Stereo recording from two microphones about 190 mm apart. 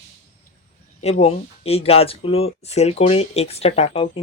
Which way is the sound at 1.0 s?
30° left (ahead or behind).